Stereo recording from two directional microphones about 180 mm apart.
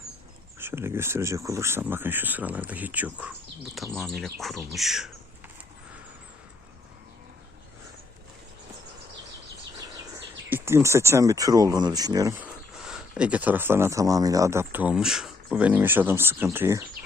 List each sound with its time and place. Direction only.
0.6 s speech: 15° right (ahead or behind)
3.9 s speech: centre (ahead or behind)
9.7 s a sound: 20° right (ahead or behind)
10.5 s speech: 15° right (ahead or behind)
12.7 s speech: 5° right (ahead or behind)